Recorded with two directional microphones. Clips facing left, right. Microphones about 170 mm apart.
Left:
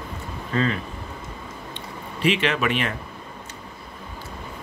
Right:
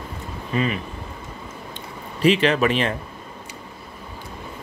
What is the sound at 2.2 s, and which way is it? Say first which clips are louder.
Speech: right 5 dB; 35° right (ahead or behind).